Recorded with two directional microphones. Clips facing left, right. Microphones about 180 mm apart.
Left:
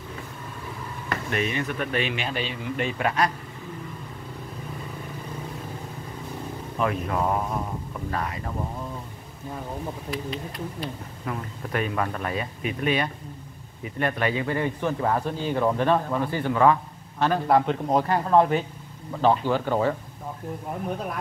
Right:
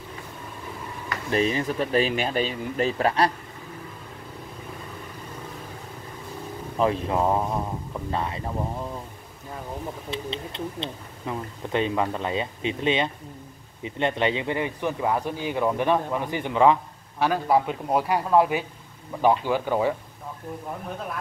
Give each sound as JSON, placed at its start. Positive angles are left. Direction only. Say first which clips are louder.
{"t": 1.3, "sound": "speech", "louder": "right 5 dB", "side_deg": -30}
{"t": 6.8, "sound": "speech", "louder": "right 3 dB", "side_deg": -30}
{"t": 10.1, "sound": "speech", "louder": "right 1 dB", "side_deg": -25}
{"t": 17.2, "sound": "speech", "louder": "left 1 dB", "side_deg": -5}